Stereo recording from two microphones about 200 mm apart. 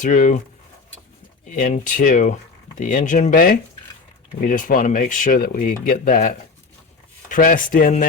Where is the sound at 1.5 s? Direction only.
40° left (ahead or behind).